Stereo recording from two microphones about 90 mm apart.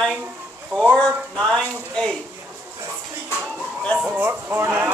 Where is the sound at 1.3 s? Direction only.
5° left (ahead or behind).